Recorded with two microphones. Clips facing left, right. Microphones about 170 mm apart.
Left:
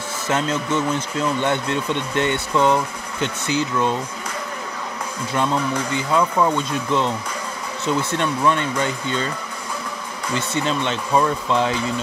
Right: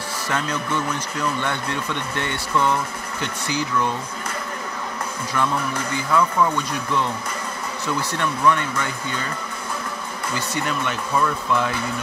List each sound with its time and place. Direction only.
0.3 s speech: 20° left (ahead or behind)
5.3 s speech: 20° left (ahead or behind)
10.3 s speech: 25° left (ahead or behind)